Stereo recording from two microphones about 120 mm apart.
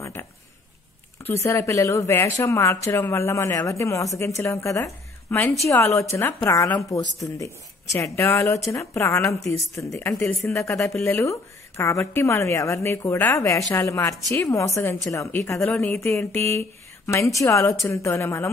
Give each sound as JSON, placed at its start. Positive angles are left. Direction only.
{"t": 0.0, "sound": "a sound", "side_deg": 20}
{"t": 1.2, "sound": "a woman's voice", "side_deg": 20}
{"t": 10.8, "sound": "a woman's voice", "side_deg": 0}
{"t": 11.1, "sound": "speech", "side_deg": 20}
{"t": 15.6, "sound": "a woman's voice", "side_deg": 5}
{"t": 15.9, "sound": "speech", "side_deg": 20}